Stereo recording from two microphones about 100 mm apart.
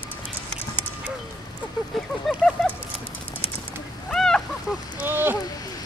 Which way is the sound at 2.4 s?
5° left (ahead or behind).